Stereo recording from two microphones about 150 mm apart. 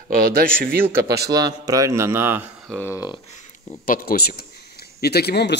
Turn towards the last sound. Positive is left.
turn(degrees=90)